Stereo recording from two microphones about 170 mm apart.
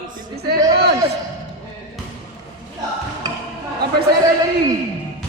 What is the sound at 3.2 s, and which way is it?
Music, 20° right (ahead or behind).